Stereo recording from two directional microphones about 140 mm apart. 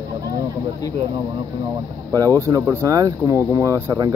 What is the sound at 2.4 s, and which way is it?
Speech, 25° right (ahead or behind).